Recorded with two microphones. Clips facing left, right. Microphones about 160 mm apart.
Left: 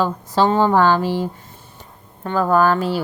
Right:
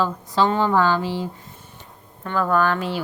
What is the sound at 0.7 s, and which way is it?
Speech, 50° left (ahead or behind).